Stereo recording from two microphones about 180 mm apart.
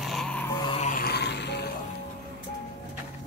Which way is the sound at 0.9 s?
60° left (ahead or behind).